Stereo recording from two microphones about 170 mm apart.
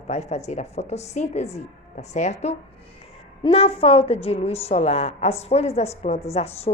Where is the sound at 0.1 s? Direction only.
40° left (ahead or behind).